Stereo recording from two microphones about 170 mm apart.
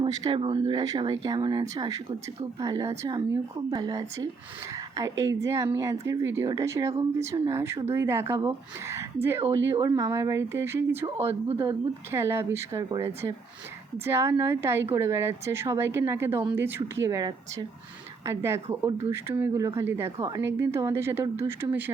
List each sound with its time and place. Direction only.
0.0 s a woman's voice: 30° right (ahead or behind); by 21.9 s 10° right (ahead or behind)